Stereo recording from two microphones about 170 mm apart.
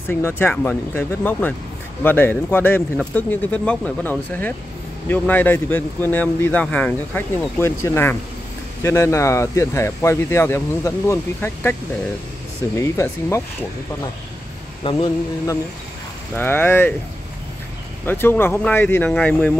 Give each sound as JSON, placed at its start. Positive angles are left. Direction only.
{"t": 0.1, "sound": "a man's voice", "side_deg": 10}
{"t": 12.7, "sound": "a man's voice", "side_deg": 20}
{"t": 14.8, "sound": "speech", "side_deg": 30}
{"t": 16.3, "sound": "a man's voice", "side_deg": 10}
{"t": 18.0, "sound": "a man's voice", "side_deg": 10}